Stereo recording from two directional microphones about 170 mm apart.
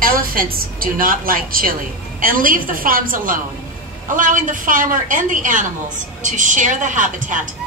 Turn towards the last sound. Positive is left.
turn(degrees=-50)  # may be behind; listen again after turning